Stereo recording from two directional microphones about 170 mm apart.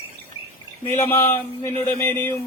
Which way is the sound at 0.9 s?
15° left (ahead or behind).